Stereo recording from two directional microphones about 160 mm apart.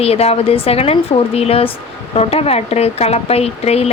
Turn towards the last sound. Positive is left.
turn(degrees=40)  # may be behind; listen again after turning